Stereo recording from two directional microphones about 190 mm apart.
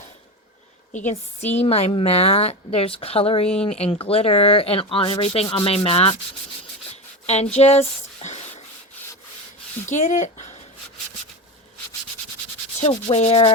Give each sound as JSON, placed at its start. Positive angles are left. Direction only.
{"t": 0.9, "sound": "speech", "side_deg": 35}
{"t": 7.3, "sound": "speech", "side_deg": 35}
{"t": 9.8, "sound": "speech", "side_deg": 40}
{"t": 12.8, "sound": "speech", "side_deg": 35}